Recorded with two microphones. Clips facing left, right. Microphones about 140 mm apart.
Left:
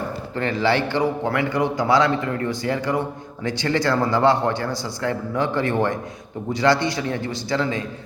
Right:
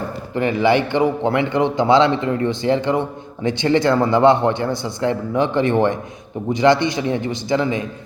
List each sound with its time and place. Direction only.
0.3 s a man's voice: 15° right (ahead or behind)